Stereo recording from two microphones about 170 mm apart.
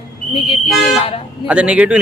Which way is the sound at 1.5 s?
5° right (ahead or behind).